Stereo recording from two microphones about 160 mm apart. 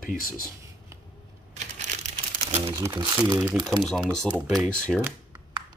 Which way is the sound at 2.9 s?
25° right (ahead or behind).